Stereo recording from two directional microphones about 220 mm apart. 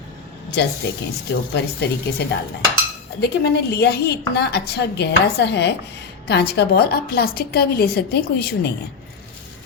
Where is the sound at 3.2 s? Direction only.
50° left (ahead or behind).